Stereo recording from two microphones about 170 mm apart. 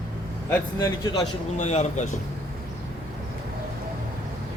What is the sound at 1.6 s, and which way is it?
Speech, 40° left (ahead or behind).